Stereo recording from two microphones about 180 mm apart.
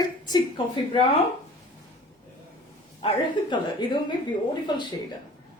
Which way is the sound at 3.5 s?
25° left (ahead or behind).